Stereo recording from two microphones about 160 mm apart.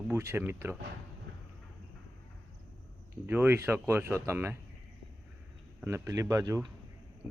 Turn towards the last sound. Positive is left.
turn(degrees=-20)  # may be behind; listen again after turning